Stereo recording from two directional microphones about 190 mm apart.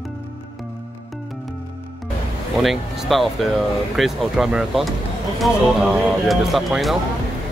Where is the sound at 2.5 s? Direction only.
Centre (ahead or behind).